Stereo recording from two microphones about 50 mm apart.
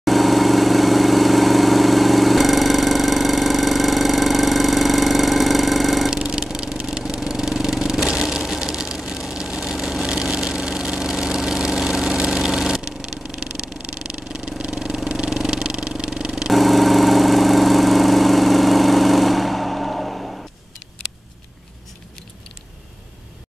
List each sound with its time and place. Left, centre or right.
0.0 s vehicle: centre
6.1 s vehicle: centre
10.2 s engine: centre
13.4 s vehicle: right
16.3 s vehicle: centre